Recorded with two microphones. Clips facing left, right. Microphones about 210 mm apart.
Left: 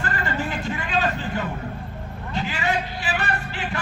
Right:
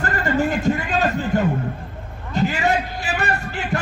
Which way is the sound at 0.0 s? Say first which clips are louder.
Right 7 dB; 45° right (ahead or behind).